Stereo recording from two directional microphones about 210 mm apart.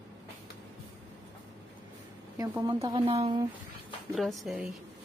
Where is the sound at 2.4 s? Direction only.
15° right (ahead or behind).